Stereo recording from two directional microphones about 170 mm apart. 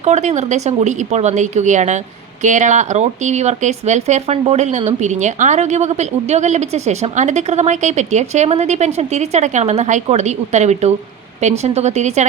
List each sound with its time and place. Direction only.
0.0 s speech: 40° right (ahead or behind)